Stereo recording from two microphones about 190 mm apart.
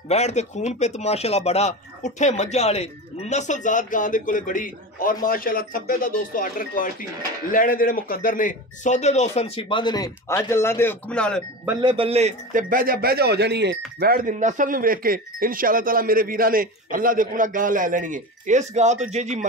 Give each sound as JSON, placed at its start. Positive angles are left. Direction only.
{"t": 0.1, "sound": "speech", "side_deg": 35}
{"t": 11.8, "sound": "a man's voice", "side_deg": -30}